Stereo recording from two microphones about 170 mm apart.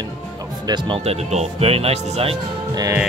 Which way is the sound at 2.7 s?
20° right (ahead or behind).